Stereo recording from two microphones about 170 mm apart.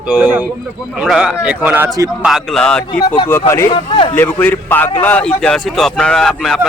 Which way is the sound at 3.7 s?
30° left (ahead or behind).